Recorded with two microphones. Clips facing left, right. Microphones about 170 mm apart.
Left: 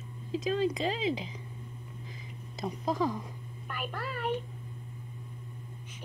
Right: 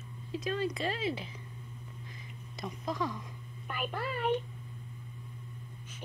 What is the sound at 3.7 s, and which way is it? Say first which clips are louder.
Speech: right 2 dB; centre (ahead or behind).